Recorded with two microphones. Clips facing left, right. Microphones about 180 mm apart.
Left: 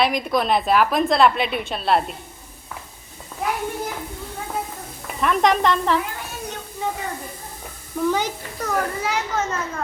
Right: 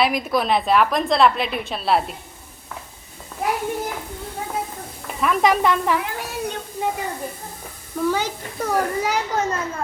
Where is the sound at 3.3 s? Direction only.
Centre (ahead or behind).